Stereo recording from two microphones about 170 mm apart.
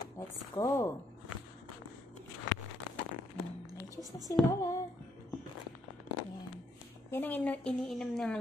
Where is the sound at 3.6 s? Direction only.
20° right (ahead or behind).